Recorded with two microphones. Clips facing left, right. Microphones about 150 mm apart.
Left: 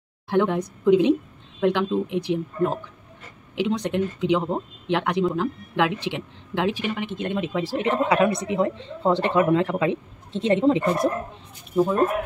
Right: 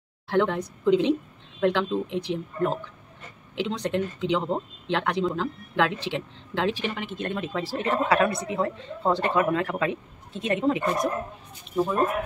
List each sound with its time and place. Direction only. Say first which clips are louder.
0.3 s speech: left 2 dB; 15° left (ahead or behind)
11.7 s speech: left 4 dB; 5° left (ahead or behind)